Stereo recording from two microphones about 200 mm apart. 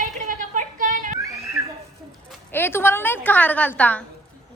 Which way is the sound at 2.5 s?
10° left (ahead or behind).